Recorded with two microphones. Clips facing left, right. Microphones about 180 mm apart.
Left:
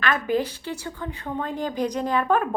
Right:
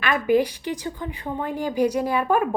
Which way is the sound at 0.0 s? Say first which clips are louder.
Right 4 dB; 10° right (ahead or behind).